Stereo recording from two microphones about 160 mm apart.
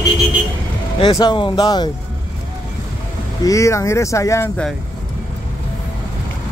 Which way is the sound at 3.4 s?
20° left (ahead or behind).